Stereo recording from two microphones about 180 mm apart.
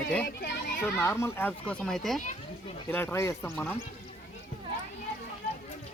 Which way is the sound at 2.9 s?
15° left (ahead or behind).